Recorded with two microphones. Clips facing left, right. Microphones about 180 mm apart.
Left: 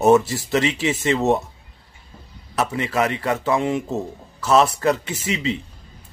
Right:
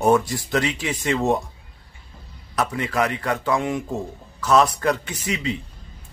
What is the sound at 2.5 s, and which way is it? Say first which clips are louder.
Speech: left 1 dB; 5° left (ahead or behind).